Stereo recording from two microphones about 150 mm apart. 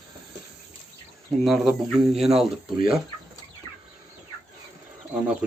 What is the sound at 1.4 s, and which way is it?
Speech, centre (ahead or behind).